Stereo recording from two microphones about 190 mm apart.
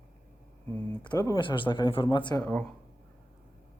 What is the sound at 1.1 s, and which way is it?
Speech, 20° left (ahead or behind).